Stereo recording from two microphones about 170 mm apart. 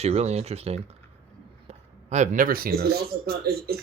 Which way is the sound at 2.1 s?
45° right (ahead or behind).